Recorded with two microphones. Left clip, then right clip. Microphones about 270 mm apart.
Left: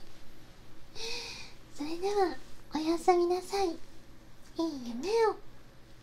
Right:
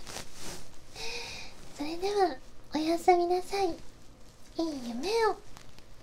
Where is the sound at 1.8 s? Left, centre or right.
Centre.